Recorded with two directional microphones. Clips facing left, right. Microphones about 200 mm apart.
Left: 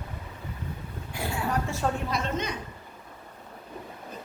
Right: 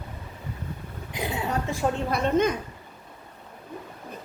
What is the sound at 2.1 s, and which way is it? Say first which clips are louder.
Speech: right 8 dB; 55° right (ahead or behind).